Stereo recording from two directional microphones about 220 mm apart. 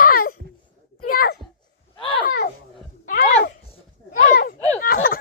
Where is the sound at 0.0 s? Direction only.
40° left (ahead or behind).